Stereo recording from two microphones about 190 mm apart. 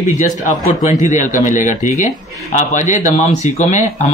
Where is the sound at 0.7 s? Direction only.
40° left (ahead or behind).